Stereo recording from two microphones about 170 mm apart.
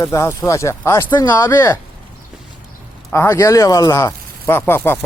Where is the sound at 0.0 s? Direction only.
15° left (ahead or behind).